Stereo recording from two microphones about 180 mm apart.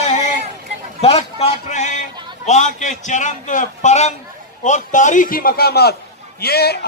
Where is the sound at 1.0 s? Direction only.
35° left (ahead or behind).